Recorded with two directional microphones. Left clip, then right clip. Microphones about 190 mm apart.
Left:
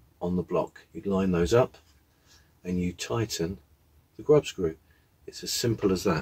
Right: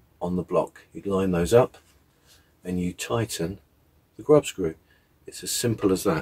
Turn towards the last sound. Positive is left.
turn(degrees=-20)  # may be behind; listen again after turning